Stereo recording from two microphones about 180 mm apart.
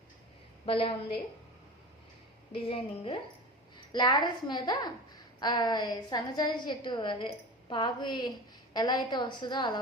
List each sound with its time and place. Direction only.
0.6 s a woman's voice: 30° left (ahead or behind)
2.5 s a woman's voice: 30° left (ahead or behind)